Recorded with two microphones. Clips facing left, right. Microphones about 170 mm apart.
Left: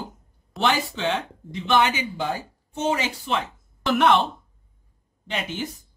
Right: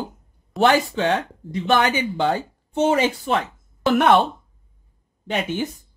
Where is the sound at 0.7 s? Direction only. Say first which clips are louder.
Right 4 dB; 45° right (ahead or behind).